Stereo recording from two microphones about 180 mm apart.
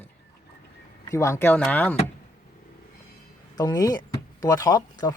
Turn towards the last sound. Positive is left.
turn(degrees=20)  # may be behind; listen again after turning